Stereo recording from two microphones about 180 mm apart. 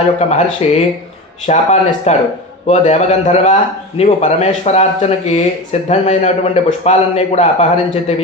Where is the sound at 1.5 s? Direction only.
40° left (ahead or behind).